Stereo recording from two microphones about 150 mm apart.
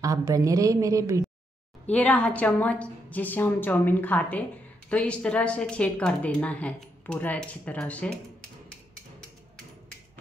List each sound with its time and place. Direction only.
0.0 s a woman's voice: 20° right (ahead or behind)
1.9 s a woman's voice: 10° left (ahead or behind)